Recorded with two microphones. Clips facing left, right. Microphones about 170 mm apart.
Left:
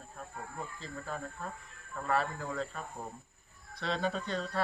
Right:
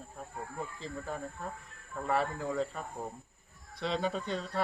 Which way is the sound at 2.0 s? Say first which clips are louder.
Right 1 dB; 15° right (ahead or behind).